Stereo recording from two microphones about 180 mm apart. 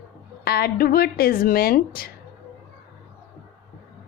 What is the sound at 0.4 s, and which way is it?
A woman's voice, 60° left (ahead or behind).